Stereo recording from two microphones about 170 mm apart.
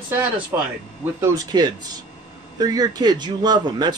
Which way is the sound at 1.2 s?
25° right (ahead or behind).